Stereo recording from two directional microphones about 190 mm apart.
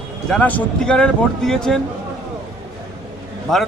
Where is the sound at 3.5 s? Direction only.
Centre (ahead or behind).